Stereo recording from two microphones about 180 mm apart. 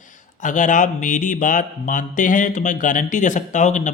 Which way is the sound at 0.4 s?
45° left (ahead or behind).